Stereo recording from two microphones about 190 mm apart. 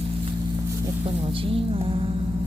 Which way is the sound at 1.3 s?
30° right (ahead or behind).